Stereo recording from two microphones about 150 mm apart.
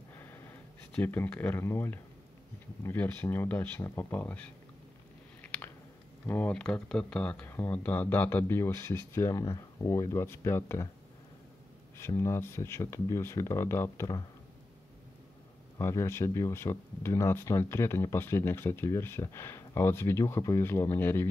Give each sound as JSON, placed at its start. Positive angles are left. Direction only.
{"t": 0.1, "sound": "a sound", "side_deg": 15}
{"t": 2.8, "sound": "speech", "side_deg": 15}
{"t": 6.2, "sound": "speech", "side_deg": 15}
{"t": 12.2, "sound": "speech", "side_deg": 15}
{"t": 15.8, "sound": "speech", "side_deg": 15}